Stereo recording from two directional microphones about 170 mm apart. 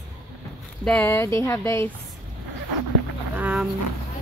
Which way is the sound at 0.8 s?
10° left (ahead or behind).